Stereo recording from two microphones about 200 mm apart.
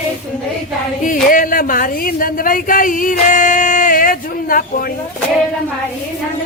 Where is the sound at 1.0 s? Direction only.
40° left (ahead or behind).